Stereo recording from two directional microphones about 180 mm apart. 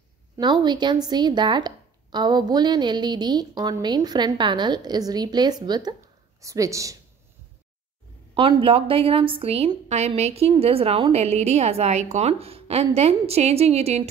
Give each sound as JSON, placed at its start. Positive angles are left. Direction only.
{"t": 0.4, "sound": "speech", "side_deg": -25}
{"t": 8.4, "sound": "a woman's voice", "side_deg": -30}